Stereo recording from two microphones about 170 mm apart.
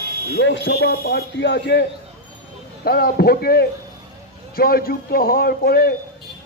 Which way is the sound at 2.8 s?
65° left (ahead or behind).